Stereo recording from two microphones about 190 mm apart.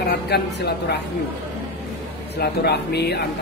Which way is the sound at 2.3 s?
60° left (ahead or behind).